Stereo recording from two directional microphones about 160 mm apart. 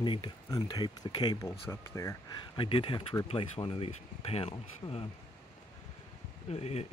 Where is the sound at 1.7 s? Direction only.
15° left (ahead or behind).